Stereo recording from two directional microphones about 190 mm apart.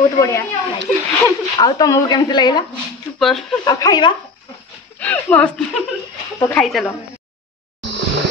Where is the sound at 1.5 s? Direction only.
20° left (ahead or behind).